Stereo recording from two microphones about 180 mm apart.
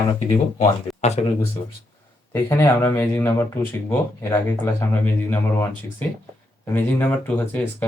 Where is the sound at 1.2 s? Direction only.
40° left (ahead or behind).